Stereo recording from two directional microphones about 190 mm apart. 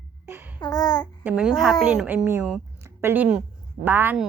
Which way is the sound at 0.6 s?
20° left (ahead or behind).